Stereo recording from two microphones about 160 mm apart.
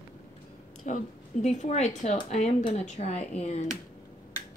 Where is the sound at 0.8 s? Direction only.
50° left (ahead or behind).